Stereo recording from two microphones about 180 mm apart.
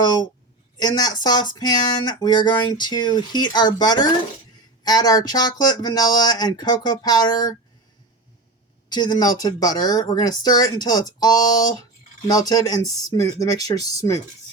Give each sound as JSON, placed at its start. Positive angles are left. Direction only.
{"t": 0.0, "sound": "speech", "side_deg": 25}
{"t": 8.9, "sound": "speech", "side_deg": 25}